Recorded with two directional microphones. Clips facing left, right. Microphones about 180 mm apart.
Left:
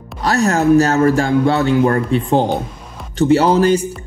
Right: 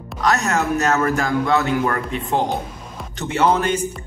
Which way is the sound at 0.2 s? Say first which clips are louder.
Left 5 dB; 35° left (ahead or behind).